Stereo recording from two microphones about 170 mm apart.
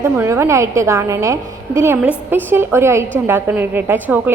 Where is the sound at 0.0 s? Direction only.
15° right (ahead or behind).